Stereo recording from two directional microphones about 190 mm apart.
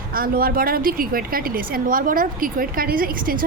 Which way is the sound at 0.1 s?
50° right (ahead or behind).